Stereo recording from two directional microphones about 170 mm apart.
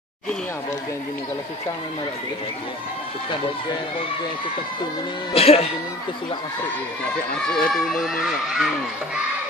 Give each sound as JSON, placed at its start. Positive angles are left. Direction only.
{"t": 5.3, "sound": "speech", "side_deg": 35}
{"t": 7.4, "sound": "a child's voice", "side_deg": 0}